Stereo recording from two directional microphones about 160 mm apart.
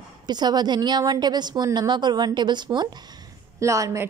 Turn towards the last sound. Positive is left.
turn(degrees=-20)  # may be behind; listen again after turning